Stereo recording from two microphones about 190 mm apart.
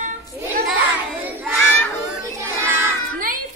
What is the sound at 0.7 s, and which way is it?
Child singing, 10° right (ahead or behind).